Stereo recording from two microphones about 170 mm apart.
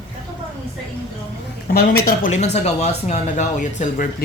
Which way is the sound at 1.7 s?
65° left (ahead or behind).